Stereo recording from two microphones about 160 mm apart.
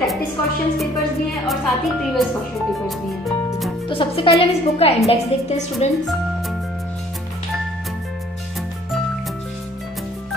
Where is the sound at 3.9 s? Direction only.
35° left (ahead or behind).